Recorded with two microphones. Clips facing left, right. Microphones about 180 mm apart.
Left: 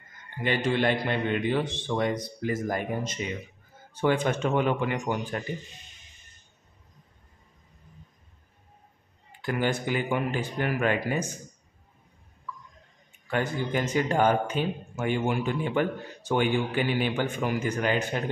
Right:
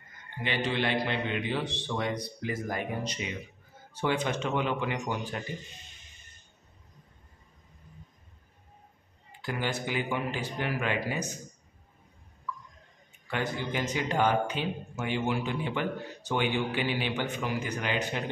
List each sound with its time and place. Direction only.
0.4 s a man's voice: 45° left (ahead or behind)
9.4 s a man's voice: 50° left (ahead or behind)
13.3 s a man's voice: 50° left (ahead or behind)